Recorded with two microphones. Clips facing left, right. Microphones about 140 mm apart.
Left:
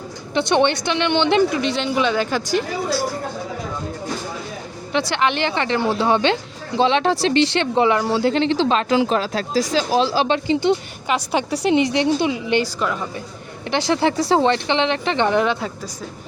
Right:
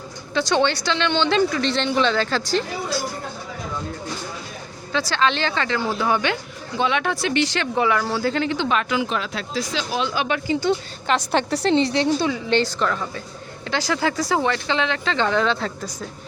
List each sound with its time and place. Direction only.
0.3 s a woman's voice: 20° left (ahead or behind)
4.9 s speech: 20° left (ahead or behind)
11.1 s a woman's voice: 10° left (ahead or behind)
13.7 s speech: 25° left (ahead or behind)